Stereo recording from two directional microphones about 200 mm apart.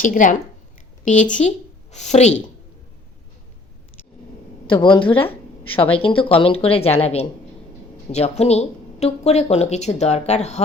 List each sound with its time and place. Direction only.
0.0 s a woman's voice: 40° left (ahead or behind)
4.6 s a woman's voice: 25° left (ahead or behind)